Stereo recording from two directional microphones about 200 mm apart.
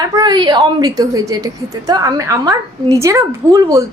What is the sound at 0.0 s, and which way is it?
A woman's voice, 20° right (ahead or behind).